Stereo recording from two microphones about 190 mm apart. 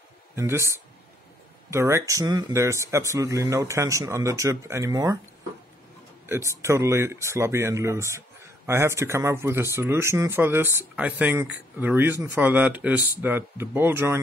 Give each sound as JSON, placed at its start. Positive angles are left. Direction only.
{"t": 0.4, "sound": "speech", "side_deg": -15}
{"t": 6.5, "sound": "speech", "side_deg": -15}